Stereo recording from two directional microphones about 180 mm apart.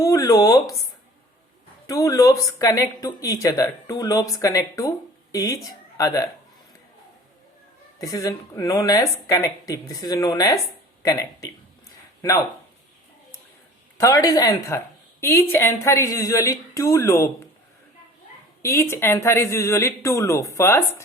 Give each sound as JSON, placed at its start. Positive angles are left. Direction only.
{"t": 0.0, "sound": "speech", "side_deg": 20}
{"t": 1.9, "sound": "speech", "side_deg": 20}
{"t": 7.9, "sound": "speech", "side_deg": 20}
{"t": 14.0, "sound": "speech", "side_deg": 20}
{"t": 18.6, "sound": "speech", "side_deg": 15}